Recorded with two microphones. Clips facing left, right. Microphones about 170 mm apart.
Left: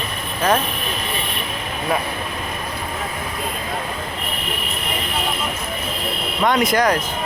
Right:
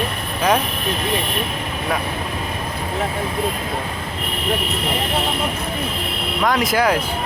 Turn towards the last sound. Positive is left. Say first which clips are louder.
# left 1 dB
turn(degrees=-5)  # may be behind; listen again after turning